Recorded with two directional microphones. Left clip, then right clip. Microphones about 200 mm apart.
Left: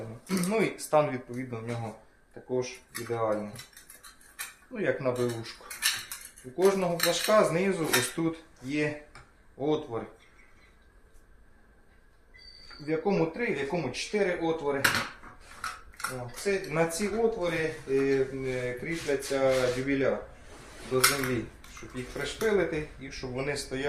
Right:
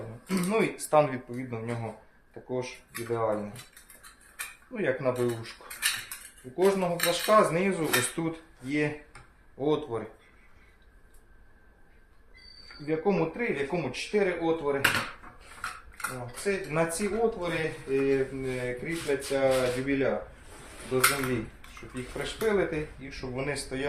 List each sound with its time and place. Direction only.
0.3 s dishes: 10° right (ahead or behind)
2.4 s speech: 25° right (ahead or behind)
4.7 s dishes: 10° right (ahead or behind)
9.6 s speech: 20° right (ahead or behind)
12.8 s dishes: 10° right (ahead or behind)
16.0 s speech: 10° right (ahead or behind)
20.9 s dishes: 5° right (ahead or behind)
21.9 s speech: 5° right (ahead or behind)